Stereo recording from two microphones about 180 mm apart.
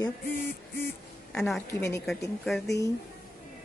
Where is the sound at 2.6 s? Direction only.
20° left (ahead or behind).